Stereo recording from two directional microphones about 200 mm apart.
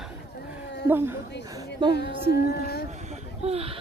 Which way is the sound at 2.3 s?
55° left (ahead or behind).